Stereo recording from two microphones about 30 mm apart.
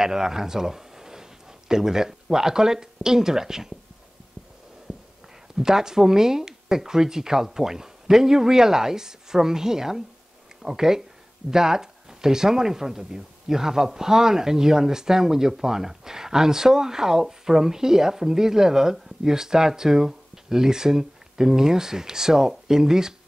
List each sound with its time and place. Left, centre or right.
0.0 s speech: centre
4.9 s a sound: right
5.6 s speech: centre